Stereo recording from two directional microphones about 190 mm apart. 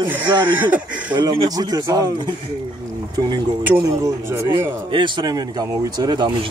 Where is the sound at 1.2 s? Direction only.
20° right (ahead or behind).